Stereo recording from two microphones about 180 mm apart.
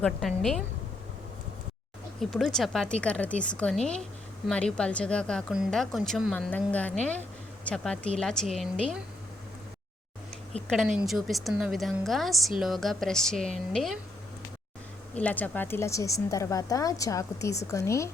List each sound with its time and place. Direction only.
0.0 s speech: centre (ahead or behind)
2.3 s speech: centre (ahead or behind)
10.9 s speech: centre (ahead or behind)
15.1 s a woman's voice: 10° left (ahead or behind)